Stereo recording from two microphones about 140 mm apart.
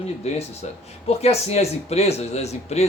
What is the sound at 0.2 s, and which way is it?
A man's voice, 50° left (ahead or behind).